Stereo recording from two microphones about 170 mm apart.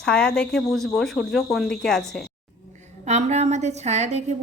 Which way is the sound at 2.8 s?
40° right (ahead or behind).